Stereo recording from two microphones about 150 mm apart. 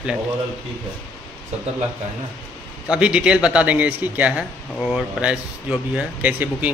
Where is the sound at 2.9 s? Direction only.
5° right (ahead or behind).